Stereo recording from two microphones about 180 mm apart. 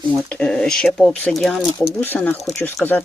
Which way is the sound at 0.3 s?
5° left (ahead or behind).